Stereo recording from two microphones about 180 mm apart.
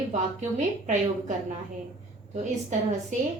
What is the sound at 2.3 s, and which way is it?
Speech, 40° right (ahead or behind).